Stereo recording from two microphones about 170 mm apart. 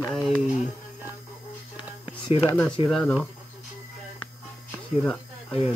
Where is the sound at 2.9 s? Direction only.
5° left (ahead or behind).